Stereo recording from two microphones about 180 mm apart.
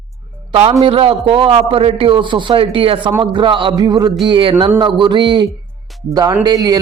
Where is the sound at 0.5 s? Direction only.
35° right (ahead or behind).